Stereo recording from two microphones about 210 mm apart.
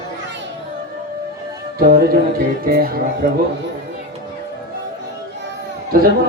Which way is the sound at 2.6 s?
45° right (ahead or behind).